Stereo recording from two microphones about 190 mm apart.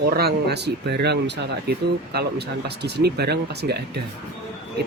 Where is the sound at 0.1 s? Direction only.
55° right (ahead or behind).